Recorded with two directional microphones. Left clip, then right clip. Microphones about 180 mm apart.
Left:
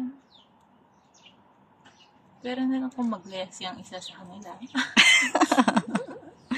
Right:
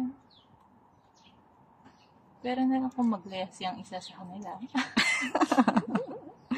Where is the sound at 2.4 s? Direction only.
50° right (ahead or behind).